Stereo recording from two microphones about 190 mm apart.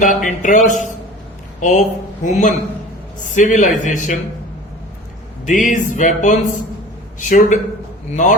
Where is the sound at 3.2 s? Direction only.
40° left (ahead or behind).